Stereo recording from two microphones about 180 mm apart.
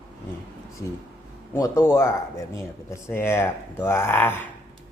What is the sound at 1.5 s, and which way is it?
Speech, 15° left (ahead or behind).